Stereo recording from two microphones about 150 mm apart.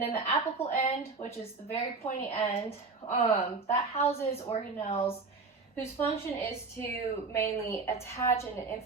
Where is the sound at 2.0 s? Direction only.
45° left (ahead or behind).